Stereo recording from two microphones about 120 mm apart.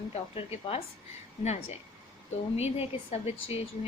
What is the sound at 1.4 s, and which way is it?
A woman's voice, 65° left (ahead or behind).